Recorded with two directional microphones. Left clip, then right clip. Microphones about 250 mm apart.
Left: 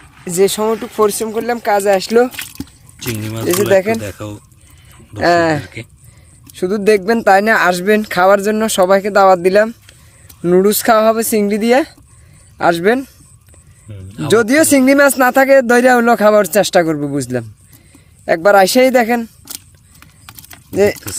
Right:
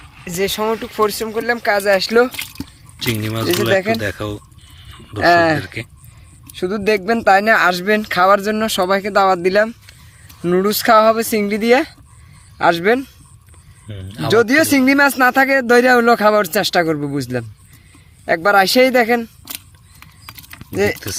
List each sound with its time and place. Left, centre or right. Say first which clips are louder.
0.3 s speech: left 5 dB; left
3.0 s speech: right 3 dB; centre
3.6 s speech: left 5 dB; left
4.0 s speech: right 4 dB; centre
5.2 s speech: even; left
5.6 s speech: right 2 dB; centre
6.5 s speech: left 5 dB; left
13.8 s speech: left 1 dB; centre
14.3 s speech: left 2 dB; left
20.7 s speech: left 5 dB; left